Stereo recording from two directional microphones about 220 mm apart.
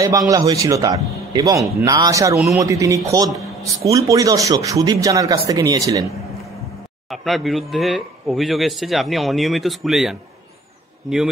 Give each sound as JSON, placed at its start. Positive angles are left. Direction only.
{"t": 0.3, "sound": "speech", "side_deg": -15}
{"t": 7.1, "sound": "a man's voice", "side_deg": 0}